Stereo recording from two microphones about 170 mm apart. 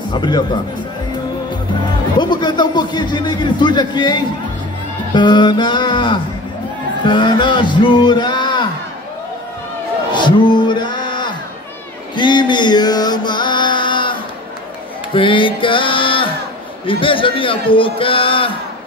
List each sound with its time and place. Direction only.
0.1 s a man's voice: 25° left (ahead or behind)
2.1 s a man's voice: 25° left (ahead or behind)
7.1 s music: 30° left (ahead or behind)
10.1 s music: 30° left (ahead or behind)
12.2 s mantra: 25° left (ahead or behind)
15.1 s music: 30° left (ahead or behind)
16.8 s a man's voice: 30° left (ahead or behind)